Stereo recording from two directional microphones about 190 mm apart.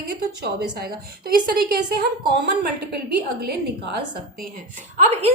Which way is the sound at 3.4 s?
55° right (ahead or behind).